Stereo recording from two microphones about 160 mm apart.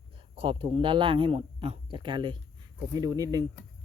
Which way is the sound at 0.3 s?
35° right (ahead or behind).